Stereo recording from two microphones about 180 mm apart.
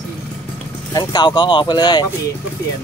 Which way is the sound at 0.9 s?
25° left (ahead or behind).